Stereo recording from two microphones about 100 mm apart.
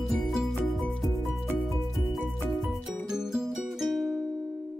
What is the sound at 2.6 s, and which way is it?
Music, centre (ahead or behind).